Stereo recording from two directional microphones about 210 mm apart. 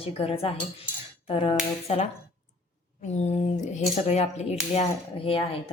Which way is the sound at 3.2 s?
35° left (ahead or behind).